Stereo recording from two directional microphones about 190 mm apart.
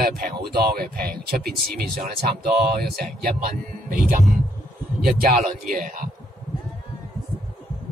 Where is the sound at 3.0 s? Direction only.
45° right (ahead or behind).